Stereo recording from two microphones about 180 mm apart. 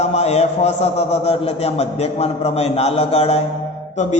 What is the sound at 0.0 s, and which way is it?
A man's voice, 40° left (ahead or behind).